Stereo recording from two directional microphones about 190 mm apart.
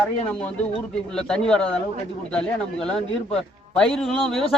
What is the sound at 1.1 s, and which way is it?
A man's voice, 5° left (ahead or behind).